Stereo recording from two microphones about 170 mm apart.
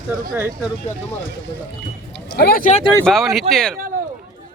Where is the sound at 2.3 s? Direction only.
60° left (ahead or behind).